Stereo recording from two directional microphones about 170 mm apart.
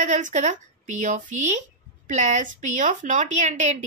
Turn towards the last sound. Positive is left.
turn(degrees=-45)  # may be behind; listen again after turning